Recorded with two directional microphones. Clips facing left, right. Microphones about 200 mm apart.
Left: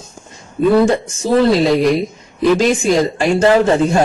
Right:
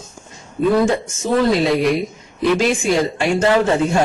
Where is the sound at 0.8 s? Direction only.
35° left (ahead or behind).